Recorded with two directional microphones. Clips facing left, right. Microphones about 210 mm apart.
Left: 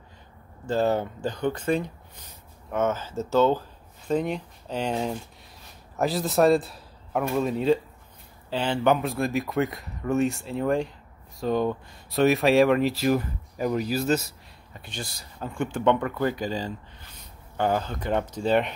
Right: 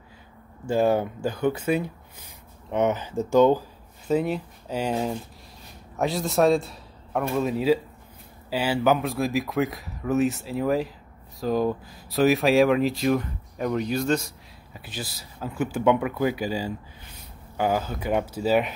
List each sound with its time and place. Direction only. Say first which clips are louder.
0.7 s a man's voice: right 2 dB; 10° right (ahead or behind)